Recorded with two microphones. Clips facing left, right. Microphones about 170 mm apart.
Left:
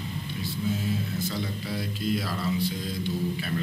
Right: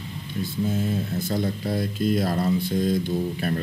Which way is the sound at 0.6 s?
45° right (ahead or behind).